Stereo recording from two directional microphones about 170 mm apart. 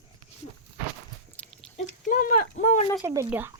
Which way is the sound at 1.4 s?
10° left (ahead or behind).